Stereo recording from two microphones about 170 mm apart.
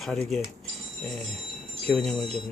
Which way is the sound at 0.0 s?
Centre (ahead or behind).